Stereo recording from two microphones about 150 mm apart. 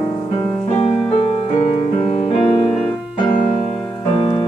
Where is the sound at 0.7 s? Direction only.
40° left (ahead or behind).